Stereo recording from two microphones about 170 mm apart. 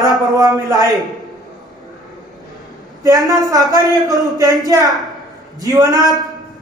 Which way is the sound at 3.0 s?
20° right (ahead or behind).